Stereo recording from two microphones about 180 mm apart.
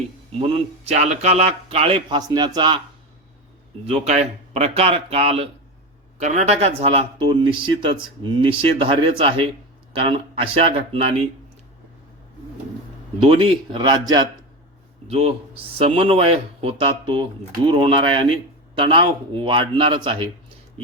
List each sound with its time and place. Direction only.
0.9 s speech: 35° right (ahead or behind)
3.8 s speech: 40° right (ahead or behind)
13.1 s speech: 30° right (ahead or behind)
15.0 s speech: 35° right (ahead or behind)